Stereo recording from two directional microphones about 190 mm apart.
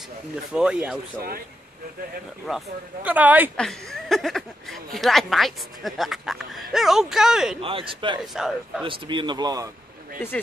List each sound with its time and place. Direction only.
0.5 s speech: 5° right (ahead or behind)
2.4 s speech: 5° right (ahead or behind)
3.5 s speech: centre (ahead or behind)
7.6 s speech: 30° right (ahead or behind)
8.2 s speech: centre (ahead or behind)
8.8 s speech: 25° right (ahead or behind)